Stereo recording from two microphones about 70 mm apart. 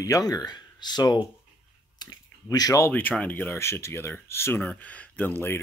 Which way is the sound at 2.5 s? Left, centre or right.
Left.